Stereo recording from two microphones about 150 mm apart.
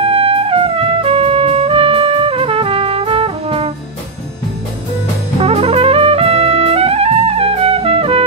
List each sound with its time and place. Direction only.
0.0 s music: 40° right (ahead or behind)
5.4 s music: 40° right (ahead or behind)